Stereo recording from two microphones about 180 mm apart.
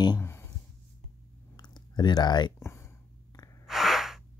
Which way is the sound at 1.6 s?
25° left (ahead or behind).